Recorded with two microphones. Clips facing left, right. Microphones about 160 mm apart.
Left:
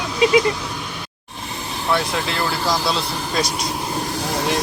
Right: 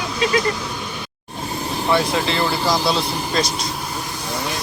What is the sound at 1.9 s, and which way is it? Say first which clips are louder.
Speech: right 2 dB; centre (ahead or behind).